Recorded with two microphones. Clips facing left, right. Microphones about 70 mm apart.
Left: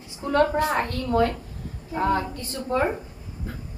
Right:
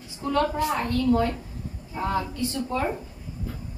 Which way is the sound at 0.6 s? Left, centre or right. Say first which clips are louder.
Left 1 dB; left.